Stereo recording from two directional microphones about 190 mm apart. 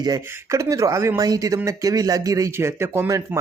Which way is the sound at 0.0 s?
15° right (ahead or behind).